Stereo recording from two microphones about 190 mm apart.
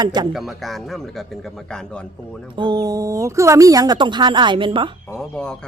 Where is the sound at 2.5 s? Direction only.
20° right (ahead or behind).